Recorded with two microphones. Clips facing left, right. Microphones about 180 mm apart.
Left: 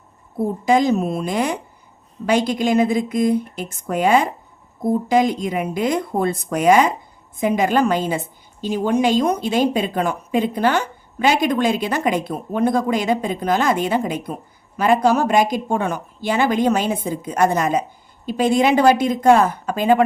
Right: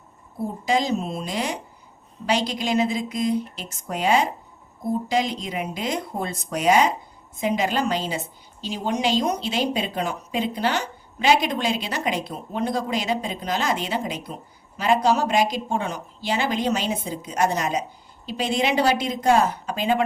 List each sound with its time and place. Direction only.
0.3 s a woman's voice: 55° left (ahead or behind)